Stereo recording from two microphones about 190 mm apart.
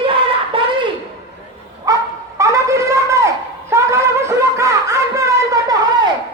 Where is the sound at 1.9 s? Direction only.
20° right (ahead or behind).